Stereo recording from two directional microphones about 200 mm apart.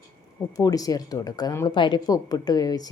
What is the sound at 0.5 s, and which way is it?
A woman's voice, 15° left (ahead or behind).